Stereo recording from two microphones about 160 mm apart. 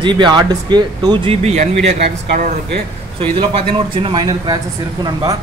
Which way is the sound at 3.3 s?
35° right (ahead or behind).